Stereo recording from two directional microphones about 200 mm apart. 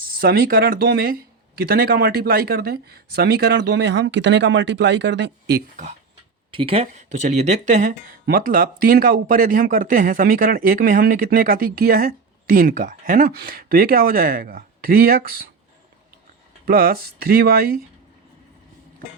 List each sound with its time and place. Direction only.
0.2 s a man's voice: 50° right (ahead or behind)
5.7 s a man's voice: 35° right (ahead or behind)
16.6 s a man's voice: 50° right (ahead or behind)